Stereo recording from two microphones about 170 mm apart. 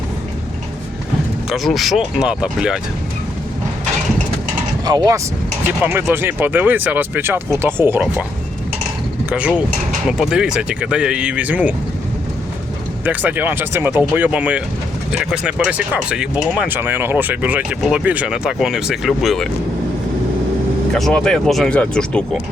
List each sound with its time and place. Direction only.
1.5 s speech: centre (ahead or behind)
4.9 s speech: 20° right (ahead or behind)
9.3 s speech: 5° right (ahead or behind)
13.1 s speech: 10° right (ahead or behind)
20.9 s speech: 5° left (ahead or behind)